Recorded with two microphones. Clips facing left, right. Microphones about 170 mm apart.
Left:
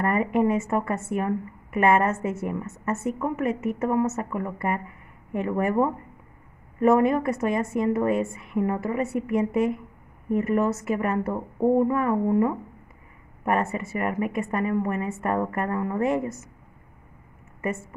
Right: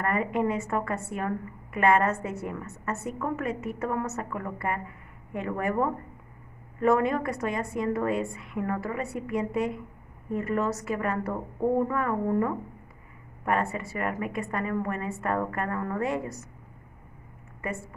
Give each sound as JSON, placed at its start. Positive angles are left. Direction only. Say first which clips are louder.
{"t": 0.0, "sound": "a woman's voice", "louder": "left 4 dB", "side_deg": 25}
{"t": 17.6, "sound": "a woman's voice", "louder": "left 5 dB", "side_deg": 25}